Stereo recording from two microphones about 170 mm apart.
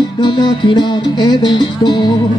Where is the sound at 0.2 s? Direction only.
30° left (ahead or behind).